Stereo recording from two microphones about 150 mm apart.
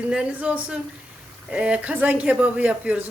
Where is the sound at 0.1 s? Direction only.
10° right (ahead or behind).